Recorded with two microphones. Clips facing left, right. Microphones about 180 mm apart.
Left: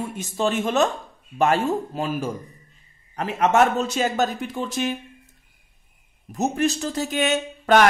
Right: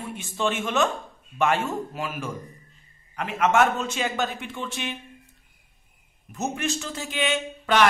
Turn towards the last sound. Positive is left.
turn(degrees=45)  # may be behind; listen again after turning